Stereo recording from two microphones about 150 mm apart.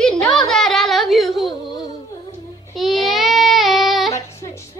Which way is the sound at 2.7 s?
Centre (ahead or behind).